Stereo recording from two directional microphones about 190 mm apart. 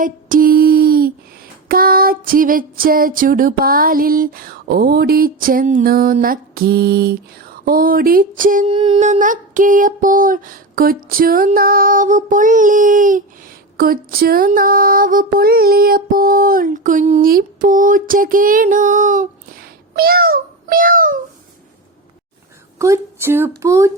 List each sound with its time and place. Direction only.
0.0 s a sound: 45° right (ahead or behind)
1.6 s music: 50° right (ahead or behind)
8.6 s music: 30° right (ahead or behind); by 21.2 s 50° right (ahead or behind)
22.8 s speech: 15° right (ahead or behind)